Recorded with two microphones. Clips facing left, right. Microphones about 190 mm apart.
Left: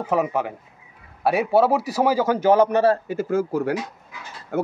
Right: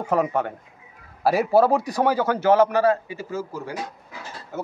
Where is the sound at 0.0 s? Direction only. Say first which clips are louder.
Even; 5° left (ahead or behind).